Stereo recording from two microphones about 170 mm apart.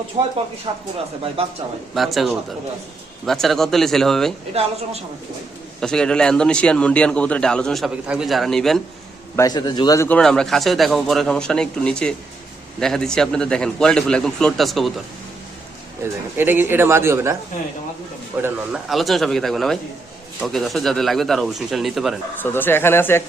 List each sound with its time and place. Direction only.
0.2 s speech: 30° right (ahead or behind)
2.0 s a man's voice: centre (ahead or behind)
5.8 s a man's voice: 5° left (ahead or behind)
9.3 s a man's voice: 20° left (ahead or behind)
10.1 s a man's voice: 5° left (ahead or behind)
16.4 s a man's voice: 10° right (ahead or behind)
18.4 s a man's voice: 5° right (ahead or behind)
22.4 s speech: 10° left (ahead or behind)